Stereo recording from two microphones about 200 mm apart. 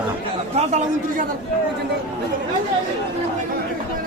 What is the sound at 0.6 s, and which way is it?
Chatter, 35° right (ahead or behind).